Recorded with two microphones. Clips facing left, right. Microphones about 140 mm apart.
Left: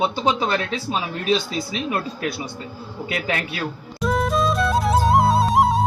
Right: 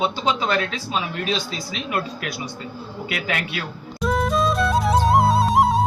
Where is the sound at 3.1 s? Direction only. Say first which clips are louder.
Left 2 dB; 30° left (ahead or behind).